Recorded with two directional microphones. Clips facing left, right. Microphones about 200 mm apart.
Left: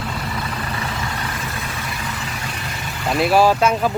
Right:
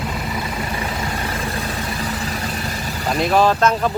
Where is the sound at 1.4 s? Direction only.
35° right (ahead or behind).